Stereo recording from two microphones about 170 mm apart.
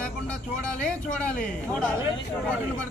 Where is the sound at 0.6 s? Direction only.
5° left (ahead or behind).